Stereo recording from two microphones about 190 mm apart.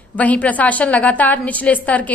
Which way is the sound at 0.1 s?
10° left (ahead or behind).